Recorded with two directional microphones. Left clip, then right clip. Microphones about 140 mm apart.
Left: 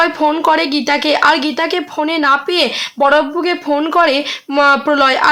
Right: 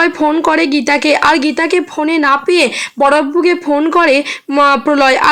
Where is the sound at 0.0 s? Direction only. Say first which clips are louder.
Right 1 dB; 25° right (ahead or behind).